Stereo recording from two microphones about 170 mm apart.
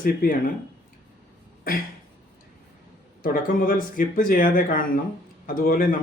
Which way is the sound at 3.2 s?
55° left (ahead or behind).